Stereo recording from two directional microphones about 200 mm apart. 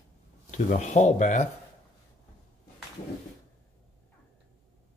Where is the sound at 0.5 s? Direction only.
35° left (ahead or behind).